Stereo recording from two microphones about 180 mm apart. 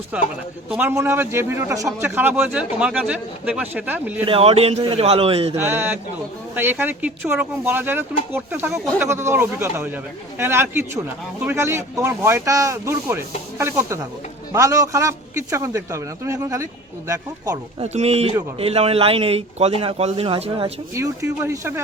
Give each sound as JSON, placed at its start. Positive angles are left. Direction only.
{"t": 0.1, "sound": "speech", "side_deg": -5}
{"t": 4.3, "sound": "a man's voice", "side_deg": -30}
{"t": 5.5, "sound": "speech", "side_deg": -10}
{"t": 17.8, "sound": "a man's voice", "side_deg": -35}
{"t": 20.9, "sound": "speech", "side_deg": -15}